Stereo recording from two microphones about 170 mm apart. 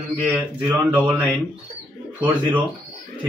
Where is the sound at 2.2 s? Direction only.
10° right (ahead or behind).